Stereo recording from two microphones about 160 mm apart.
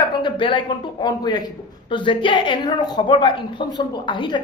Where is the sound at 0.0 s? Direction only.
30° left (ahead or behind).